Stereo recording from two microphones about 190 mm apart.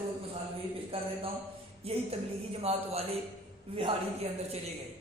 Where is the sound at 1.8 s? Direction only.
30° right (ahead or behind).